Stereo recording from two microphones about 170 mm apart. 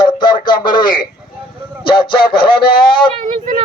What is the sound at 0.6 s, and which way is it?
Speech, 25° left (ahead or behind).